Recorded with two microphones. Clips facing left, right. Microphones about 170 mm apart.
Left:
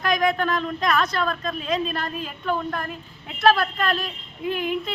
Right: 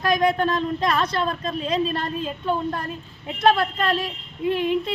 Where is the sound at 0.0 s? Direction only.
25° right (ahead or behind).